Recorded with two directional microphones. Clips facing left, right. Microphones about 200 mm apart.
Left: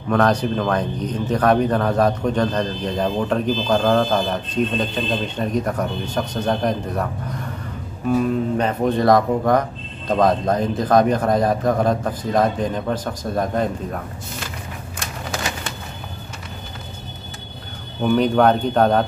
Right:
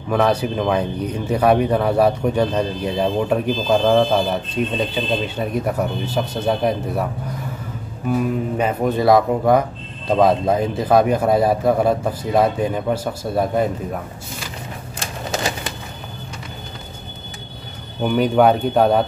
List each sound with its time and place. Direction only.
0.1 s speech: 5° right (ahead or behind)
8.1 s speech: 10° right (ahead or behind)
15.0 s a sound: 30° right (ahead or behind)
18.0 s speech: 5° right (ahead or behind)